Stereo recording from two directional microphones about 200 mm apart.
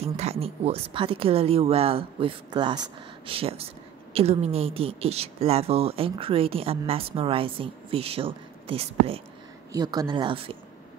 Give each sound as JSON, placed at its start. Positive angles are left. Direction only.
{"t": 0.0, "sound": "speech", "side_deg": -30}
{"t": 9.7, "sound": "speech", "side_deg": -20}